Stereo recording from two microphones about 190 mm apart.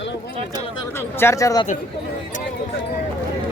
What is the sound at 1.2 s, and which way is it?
Speech, 15° left (ahead or behind).